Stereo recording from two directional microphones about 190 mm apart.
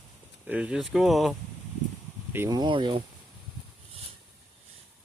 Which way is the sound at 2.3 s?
15° right (ahead or behind).